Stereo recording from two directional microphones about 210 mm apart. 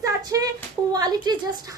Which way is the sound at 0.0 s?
15° right (ahead or behind).